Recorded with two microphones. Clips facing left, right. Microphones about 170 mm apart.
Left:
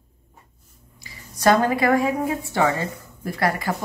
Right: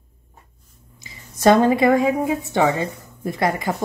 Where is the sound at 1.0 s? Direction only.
20° right (ahead or behind).